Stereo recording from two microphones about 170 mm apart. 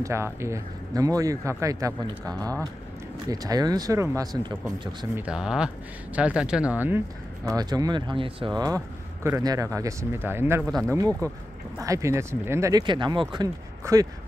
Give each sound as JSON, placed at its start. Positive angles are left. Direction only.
{"t": 0.0, "sound": "speech", "side_deg": -15}
{"t": 5.2, "sound": "speech", "side_deg": -5}
{"t": 7.4, "sound": "speech", "side_deg": -20}
{"t": 10.6, "sound": "speech", "side_deg": 0}
{"t": 11.2, "sound": "speech", "side_deg": -20}